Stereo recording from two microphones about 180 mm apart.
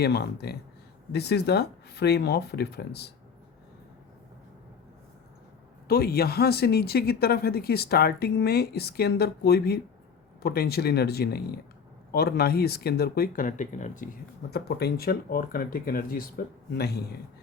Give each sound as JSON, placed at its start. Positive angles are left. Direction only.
{"t": 0.0, "sound": "speech", "side_deg": 65}
{"t": 5.9, "sound": "speech", "side_deg": 60}
{"t": 16.7, "sound": "speech", "side_deg": 65}